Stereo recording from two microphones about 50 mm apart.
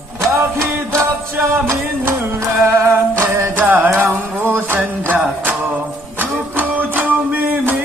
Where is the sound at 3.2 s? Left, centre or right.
Right.